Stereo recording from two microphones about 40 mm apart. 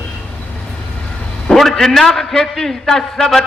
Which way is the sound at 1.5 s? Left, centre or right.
Centre.